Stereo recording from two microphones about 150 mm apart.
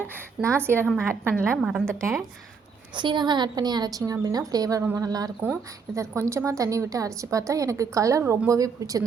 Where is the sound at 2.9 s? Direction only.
30° right (ahead or behind).